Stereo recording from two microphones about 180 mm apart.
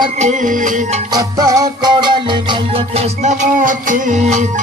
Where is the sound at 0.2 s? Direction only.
45° right (ahead or behind).